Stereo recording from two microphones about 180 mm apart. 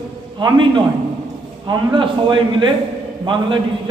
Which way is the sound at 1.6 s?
25° right (ahead or behind).